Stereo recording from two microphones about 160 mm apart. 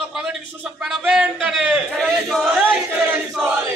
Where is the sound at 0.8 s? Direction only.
5° right (ahead or behind).